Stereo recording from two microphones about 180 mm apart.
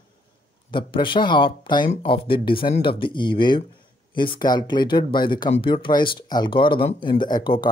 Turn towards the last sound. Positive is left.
turn(degrees=25)  # may be behind; listen again after turning